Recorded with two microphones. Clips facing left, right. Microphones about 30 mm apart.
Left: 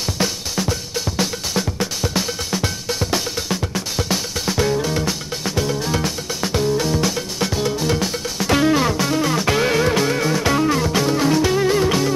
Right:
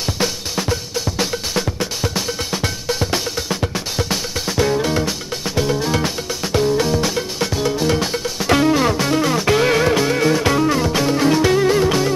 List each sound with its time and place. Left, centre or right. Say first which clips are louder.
0.2 s drum: even; centre
0.9 s music: right 1 dB; centre
4.6 s music: right 2 dB; centre